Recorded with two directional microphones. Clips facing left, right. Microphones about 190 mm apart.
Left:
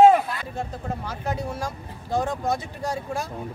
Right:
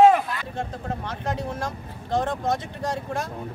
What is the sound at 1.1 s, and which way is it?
Speech, 10° left (ahead or behind).